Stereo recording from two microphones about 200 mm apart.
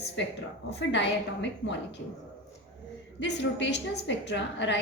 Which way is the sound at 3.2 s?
60° left (ahead or behind).